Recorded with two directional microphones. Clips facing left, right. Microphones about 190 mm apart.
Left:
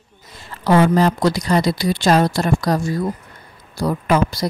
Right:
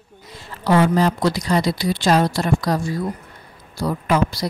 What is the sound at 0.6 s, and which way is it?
A woman's voice, 50° left (ahead or behind).